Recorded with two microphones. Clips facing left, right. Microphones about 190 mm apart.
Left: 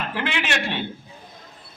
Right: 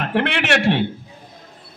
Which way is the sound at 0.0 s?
65° right (ahead or behind).